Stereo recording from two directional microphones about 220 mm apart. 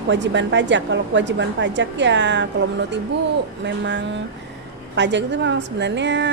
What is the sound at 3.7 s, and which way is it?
A woman's voice, 55° right (ahead or behind).